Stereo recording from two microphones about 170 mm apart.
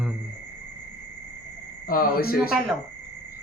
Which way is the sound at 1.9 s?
60° left (ahead or behind).